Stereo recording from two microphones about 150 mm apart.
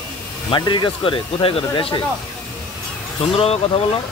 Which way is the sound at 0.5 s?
30° left (ahead or behind).